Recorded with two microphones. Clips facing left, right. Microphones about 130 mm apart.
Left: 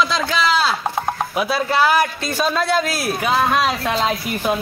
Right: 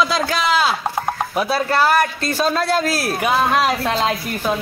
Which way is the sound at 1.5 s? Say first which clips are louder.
Even; centre (ahead or behind).